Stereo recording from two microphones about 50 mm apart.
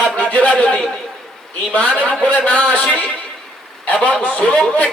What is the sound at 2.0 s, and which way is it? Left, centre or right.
Speech, left.